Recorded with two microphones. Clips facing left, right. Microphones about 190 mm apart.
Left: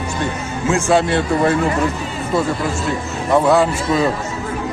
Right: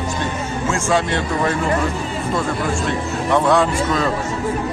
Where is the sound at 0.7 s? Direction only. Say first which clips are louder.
Left 5 dB; 5° left (ahead or behind).